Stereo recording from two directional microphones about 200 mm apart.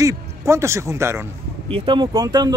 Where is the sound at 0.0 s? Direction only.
15° right (ahead or behind).